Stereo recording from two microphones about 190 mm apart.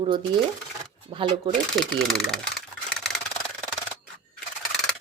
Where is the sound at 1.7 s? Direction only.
Centre (ahead or behind).